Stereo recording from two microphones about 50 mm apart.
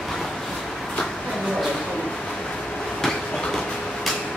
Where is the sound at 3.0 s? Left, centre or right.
Centre.